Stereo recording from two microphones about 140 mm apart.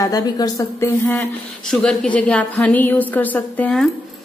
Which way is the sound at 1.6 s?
5° left (ahead or behind).